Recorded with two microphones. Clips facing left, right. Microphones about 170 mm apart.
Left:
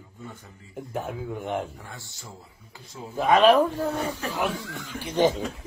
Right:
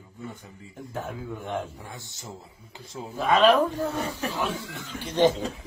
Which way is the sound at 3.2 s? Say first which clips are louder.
Left 2 dB; 15° left (ahead or behind).